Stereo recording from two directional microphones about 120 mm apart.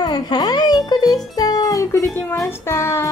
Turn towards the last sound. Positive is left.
turn(degrees=25)  # may be behind; listen again after turning